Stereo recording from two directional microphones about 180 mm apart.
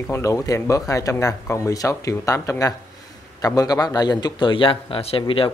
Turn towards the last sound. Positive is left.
turn(degrees=30)  # may be behind; listen again after turning